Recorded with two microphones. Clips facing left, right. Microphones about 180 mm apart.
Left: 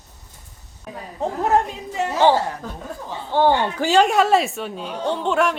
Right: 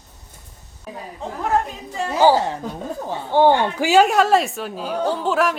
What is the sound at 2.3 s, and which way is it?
A woman's voice, 20° right (ahead or behind).